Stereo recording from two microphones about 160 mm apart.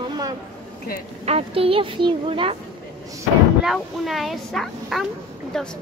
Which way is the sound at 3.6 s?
Centre (ahead or behind).